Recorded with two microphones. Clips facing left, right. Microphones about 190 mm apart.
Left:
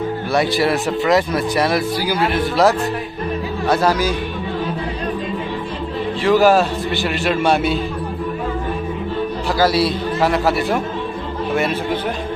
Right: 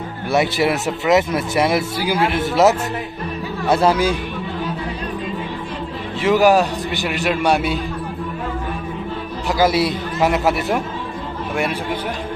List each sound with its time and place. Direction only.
0.3 s speech: 20° right (ahead or behind)
3.7 s speech: 25° right (ahead or behind)
6.2 s a man's voice: 15° right (ahead or behind)
9.6 s speech: 20° right (ahead or behind)